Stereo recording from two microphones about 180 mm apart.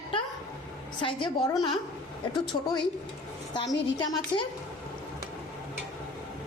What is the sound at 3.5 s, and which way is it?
Speech, 25° left (ahead or behind).